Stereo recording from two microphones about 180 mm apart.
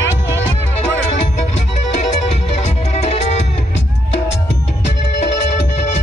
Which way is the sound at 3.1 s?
35° left (ahead or behind).